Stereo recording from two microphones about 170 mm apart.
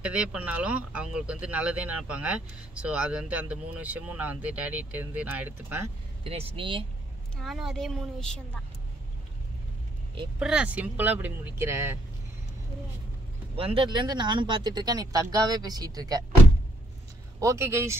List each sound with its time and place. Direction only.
0.0 s speech: 5° right (ahead or behind)
6.2 s speech: 35° right (ahead or behind)
7.3 s a woman's voice: centre (ahead or behind)
10.4 s speech: 5° right (ahead or behind)
13.6 s speech: 30° right (ahead or behind)
17.4 s speech: 15° right (ahead or behind)